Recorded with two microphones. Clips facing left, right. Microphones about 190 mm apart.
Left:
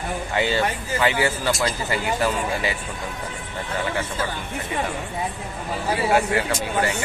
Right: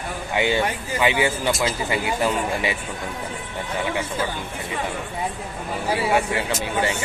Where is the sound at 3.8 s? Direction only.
15° right (ahead or behind).